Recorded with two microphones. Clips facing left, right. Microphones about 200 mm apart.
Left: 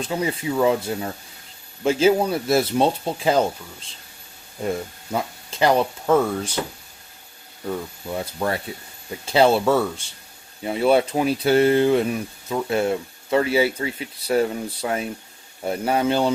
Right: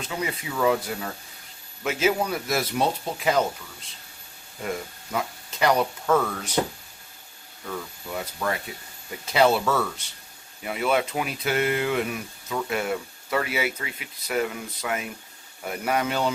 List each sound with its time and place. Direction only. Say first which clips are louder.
0.0 s speech: left 6 dB; 30° left (ahead or behind)
5.1 s speech: left 3 dB; 30° left (ahead or behind)
7.7 s speech: left 5 dB; 30° left (ahead or behind)